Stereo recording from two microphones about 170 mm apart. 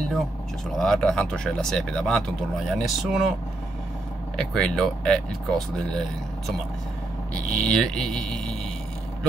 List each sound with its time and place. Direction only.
0.7 s speech: 5° left (ahead or behind)
4.4 s speech: 5° left (ahead or behind)
7.6 s speech: 5° left (ahead or behind)